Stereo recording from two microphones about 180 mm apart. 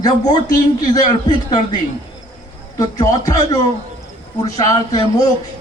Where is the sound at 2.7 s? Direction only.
20° left (ahead or behind).